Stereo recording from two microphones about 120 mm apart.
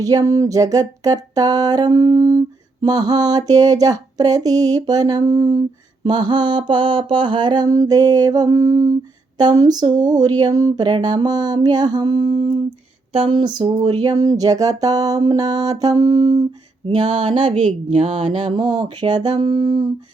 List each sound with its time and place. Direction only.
0.0 s mantra: 30° right (ahead or behind)
13.3 s mantra: 40° right (ahead or behind)
16.8 s a sound: 50° right (ahead or behind)
18.8 s mantra: 35° right (ahead or behind)